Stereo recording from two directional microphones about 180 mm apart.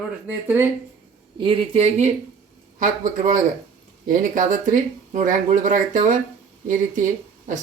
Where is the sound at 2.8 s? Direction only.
45° right (ahead or behind).